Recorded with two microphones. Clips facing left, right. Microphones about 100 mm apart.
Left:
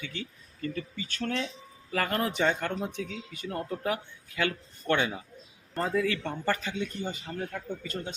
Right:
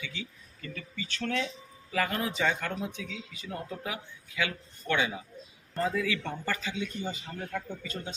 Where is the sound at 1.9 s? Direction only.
55° left (ahead or behind).